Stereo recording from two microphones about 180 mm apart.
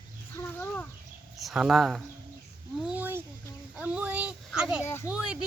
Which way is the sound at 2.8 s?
5° right (ahead or behind).